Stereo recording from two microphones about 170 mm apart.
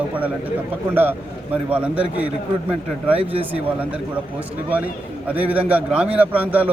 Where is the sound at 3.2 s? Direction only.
35° right (ahead or behind).